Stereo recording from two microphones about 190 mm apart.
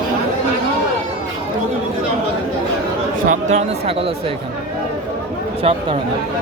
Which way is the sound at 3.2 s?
35° right (ahead or behind).